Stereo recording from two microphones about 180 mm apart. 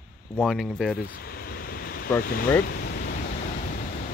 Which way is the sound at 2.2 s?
55° left (ahead or behind).